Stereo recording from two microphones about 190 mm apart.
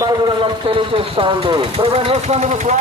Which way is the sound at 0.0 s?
25° right (ahead or behind).